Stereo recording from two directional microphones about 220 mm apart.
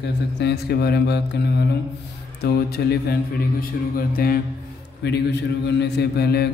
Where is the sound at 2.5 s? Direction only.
45° left (ahead or behind).